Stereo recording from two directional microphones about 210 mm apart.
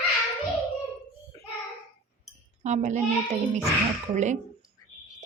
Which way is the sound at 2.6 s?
35° right (ahead or behind).